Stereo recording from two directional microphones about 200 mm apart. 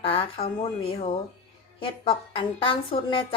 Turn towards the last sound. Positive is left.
turn(degrees=25)  # may be behind; listen again after turning